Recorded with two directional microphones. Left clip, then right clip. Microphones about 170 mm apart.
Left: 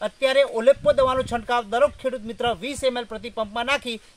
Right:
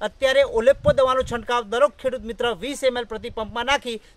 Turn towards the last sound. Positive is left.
turn(degrees=-20)  # may be behind; listen again after turning